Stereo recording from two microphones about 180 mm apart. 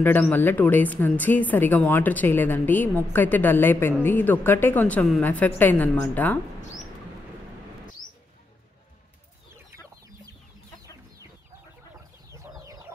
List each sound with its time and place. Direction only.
0.0 s speech: 10° left (ahead or behind)
12.3 s chicken: 15° right (ahead or behind)